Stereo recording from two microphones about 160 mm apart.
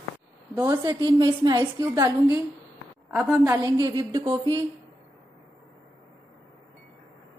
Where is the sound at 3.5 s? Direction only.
25° right (ahead or behind).